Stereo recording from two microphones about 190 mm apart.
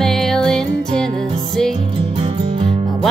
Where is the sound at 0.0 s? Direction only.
Centre (ahead or behind).